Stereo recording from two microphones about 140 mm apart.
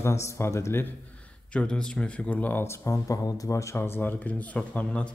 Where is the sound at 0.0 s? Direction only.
20° left (ahead or behind).